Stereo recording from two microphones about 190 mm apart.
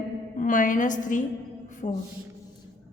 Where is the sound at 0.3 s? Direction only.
45° left (ahead or behind).